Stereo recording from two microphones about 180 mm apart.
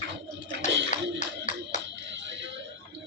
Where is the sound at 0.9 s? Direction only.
40° left (ahead or behind).